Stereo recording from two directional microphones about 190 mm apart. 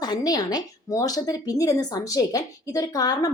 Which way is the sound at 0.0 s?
20° left (ahead or behind).